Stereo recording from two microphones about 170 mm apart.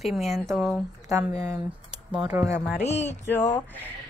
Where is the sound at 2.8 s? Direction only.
40° left (ahead or behind).